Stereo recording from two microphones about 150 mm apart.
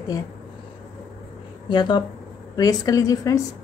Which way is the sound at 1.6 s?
30° left (ahead or behind).